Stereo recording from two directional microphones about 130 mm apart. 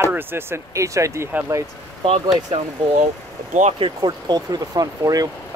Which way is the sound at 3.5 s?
60° right (ahead or behind).